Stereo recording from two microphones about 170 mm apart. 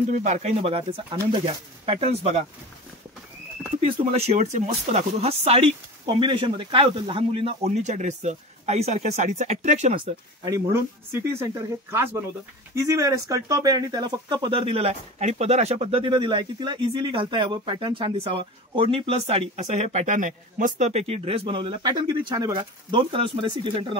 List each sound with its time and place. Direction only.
0.1 s speech: 40° right (ahead or behind)
3.8 s speech: 40° right (ahead or behind)
10.4 s speech: 15° right (ahead or behind)